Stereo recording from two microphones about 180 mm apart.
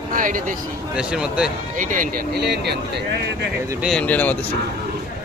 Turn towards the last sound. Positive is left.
turn(degrees=10)  # may be behind; listen again after turning